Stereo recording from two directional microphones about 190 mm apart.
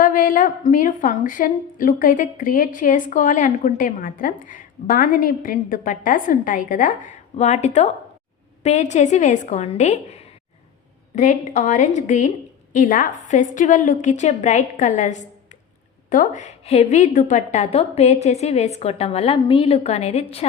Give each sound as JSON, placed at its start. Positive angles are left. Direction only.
{"t": 0.0, "sound": "a woman's voice", "side_deg": 45}